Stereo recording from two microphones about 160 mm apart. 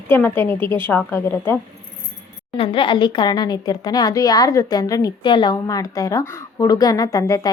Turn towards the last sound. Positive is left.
turn(degrees=20)  # may be behind; listen again after turning